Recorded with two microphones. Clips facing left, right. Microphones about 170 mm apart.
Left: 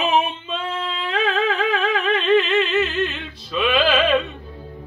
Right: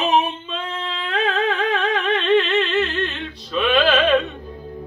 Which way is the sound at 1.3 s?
Centre (ahead or behind).